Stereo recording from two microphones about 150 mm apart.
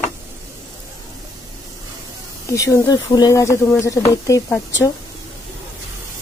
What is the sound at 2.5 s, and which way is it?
Speech, 20° left (ahead or behind).